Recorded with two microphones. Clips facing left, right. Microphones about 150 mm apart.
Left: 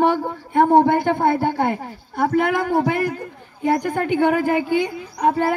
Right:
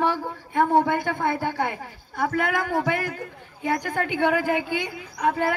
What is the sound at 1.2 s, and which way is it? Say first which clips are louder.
A man's voice: left 6 dB; 50° left (ahead or behind).